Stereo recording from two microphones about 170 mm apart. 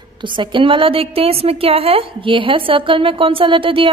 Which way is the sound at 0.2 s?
30° right (ahead or behind).